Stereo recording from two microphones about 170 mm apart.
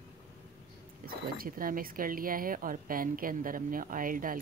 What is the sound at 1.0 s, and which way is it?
Speech, 60° right (ahead or behind).